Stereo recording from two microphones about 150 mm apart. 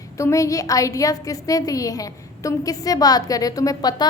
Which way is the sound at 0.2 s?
20° left (ahead or behind).